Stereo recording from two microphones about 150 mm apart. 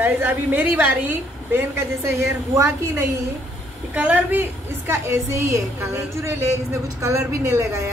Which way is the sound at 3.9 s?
10° right (ahead or behind).